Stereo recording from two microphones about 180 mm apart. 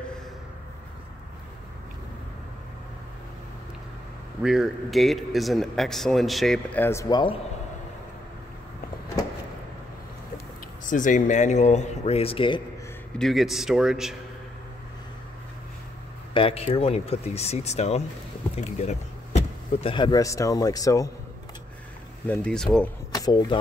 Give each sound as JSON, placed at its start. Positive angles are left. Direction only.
{"t": 4.4, "sound": "speech", "side_deg": -5}
{"t": 10.9, "sound": "speech", "side_deg": 45}
{"t": 13.2, "sound": "speech", "side_deg": 0}
{"t": 16.3, "sound": "speech", "side_deg": 30}
{"t": 22.3, "sound": "speech", "side_deg": 5}
{"t": 23.1, "sound": "speech", "side_deg": 25}